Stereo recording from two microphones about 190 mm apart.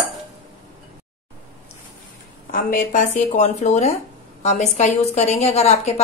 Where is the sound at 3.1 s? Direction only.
35° left (ahead or behind).